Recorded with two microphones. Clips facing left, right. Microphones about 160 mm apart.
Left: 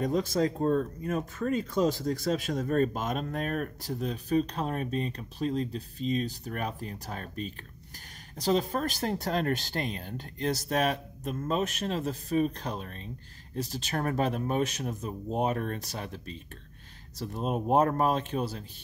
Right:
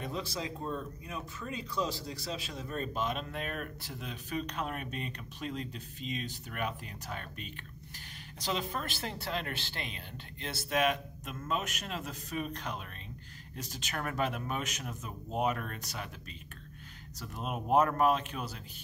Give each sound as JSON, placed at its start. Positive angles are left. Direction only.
{"t": 0.0, "sound": "speech", "side_deg": 45}